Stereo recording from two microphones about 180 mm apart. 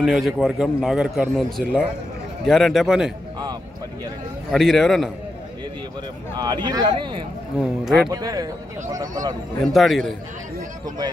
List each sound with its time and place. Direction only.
0.0 s a man's voice: centre (ahead or behind)
4.5 s a man's voice: centre (ahead or behind)
6.3 s speech: 25° right (ahead or behind)
7.8 s a man's voice: centre (ahead or behind)
8.1 s speech: 20° right (ahead or behind)
9.6 s a man's voice: centre (ahead or behind)